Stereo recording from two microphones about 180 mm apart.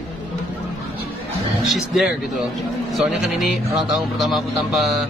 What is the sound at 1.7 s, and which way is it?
Speech, 5° right (ahead or behind).